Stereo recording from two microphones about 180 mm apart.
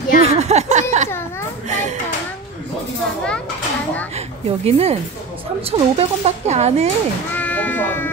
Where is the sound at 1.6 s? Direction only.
40° right (ahead or behind).